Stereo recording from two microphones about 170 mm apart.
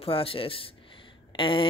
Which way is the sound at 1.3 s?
30° left (ahead or behind).